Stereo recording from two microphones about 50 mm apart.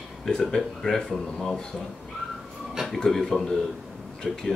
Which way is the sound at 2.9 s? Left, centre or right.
Centre.